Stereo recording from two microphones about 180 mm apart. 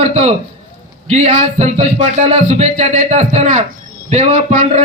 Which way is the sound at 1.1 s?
40° right (ahead or behind).